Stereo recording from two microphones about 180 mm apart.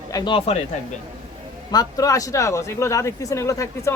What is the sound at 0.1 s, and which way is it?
Speech, 25° left (ahead or behind).